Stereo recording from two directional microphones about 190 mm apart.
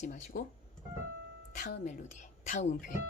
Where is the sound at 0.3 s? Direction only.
45° left (ahead or behind).